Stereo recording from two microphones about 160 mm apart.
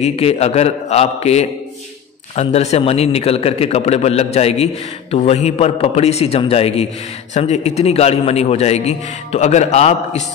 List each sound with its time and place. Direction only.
0.0 s a man's voice: 40° left (ahead or behind)